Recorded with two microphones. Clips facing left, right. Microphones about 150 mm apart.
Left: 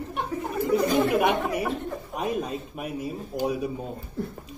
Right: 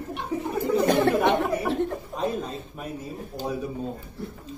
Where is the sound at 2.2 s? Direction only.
10° left (ahead or behind).